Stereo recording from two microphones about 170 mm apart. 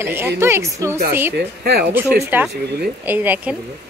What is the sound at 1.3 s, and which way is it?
Speech, 65° right (ahead or behind).